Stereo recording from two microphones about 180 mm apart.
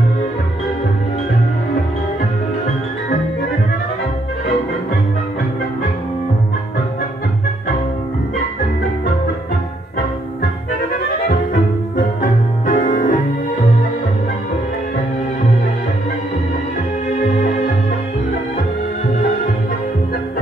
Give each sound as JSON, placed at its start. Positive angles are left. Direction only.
{"t": 10.4, "sound": "music", "side_deg": 55}